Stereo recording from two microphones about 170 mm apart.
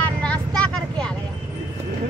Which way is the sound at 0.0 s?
5° left (ahead or behind).